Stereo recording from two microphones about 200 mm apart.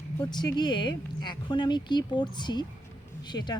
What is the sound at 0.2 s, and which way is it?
Speech, 20° left (ahead or behind).